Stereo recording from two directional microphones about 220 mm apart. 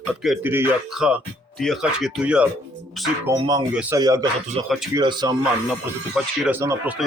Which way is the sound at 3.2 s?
15° right (ahead or behind).